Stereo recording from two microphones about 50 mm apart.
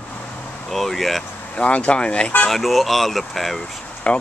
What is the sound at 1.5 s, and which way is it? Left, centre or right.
Speech, left.